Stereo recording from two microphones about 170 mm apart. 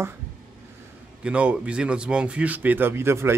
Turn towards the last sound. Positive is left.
turn(degrees=-15)  # may be behind; listen again after turning